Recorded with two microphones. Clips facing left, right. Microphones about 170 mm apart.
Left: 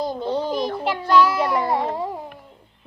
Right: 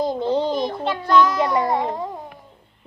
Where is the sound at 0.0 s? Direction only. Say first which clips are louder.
Right 3 dB; 20° right (ahead or behind).